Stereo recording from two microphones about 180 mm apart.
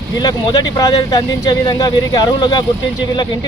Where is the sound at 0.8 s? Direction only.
20° left (ahead or behind).